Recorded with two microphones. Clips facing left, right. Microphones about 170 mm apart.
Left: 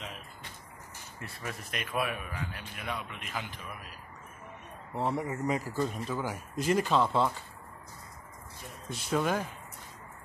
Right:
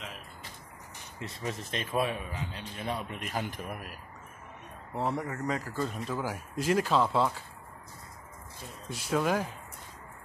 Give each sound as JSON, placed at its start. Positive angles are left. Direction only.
{"t": 0.0, "sound": "a sound", "side_deg": 0}
{"t": 1.2, "sound": "a man's voice", "side_deg": -20}
{"t": 4.9, "sound": "speech", "side_deg": 0}
{"t": 5.2, "sound": "speech", "side_deg": 10}
{"t": 8.8, "sound": "speech", "side_deg": -5}